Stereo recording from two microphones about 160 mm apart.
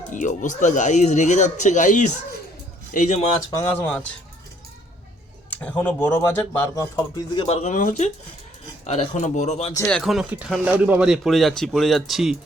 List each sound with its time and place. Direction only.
0.1 s speech: 50° left (ahead or behind)
3.6 s speech: 10° left (ahead or behind)
5.5 s speech: 10° left (ahead or behind)
6.7 s speech: 25° left (ahead or behind)
7.4 s speech: 40° left (ahead or behind)
9.7 s speech: 10° left (ahead or behind)
10.0 s speech: centre (ahead or behind)